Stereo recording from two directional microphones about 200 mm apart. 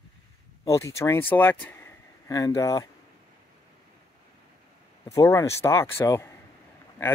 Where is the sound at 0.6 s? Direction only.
15° left (ahead or behind).